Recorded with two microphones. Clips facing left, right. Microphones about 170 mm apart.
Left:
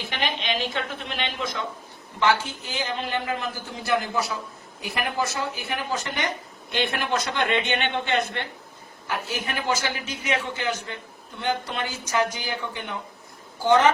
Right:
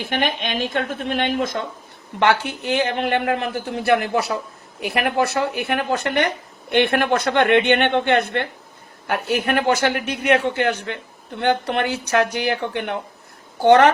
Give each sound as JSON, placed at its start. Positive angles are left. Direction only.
{"t": 0.0, "sound": "a woman's voice", "side_deg": -50}
{"t": 2.1, "sound": "a man's voice", "side_deg": -65}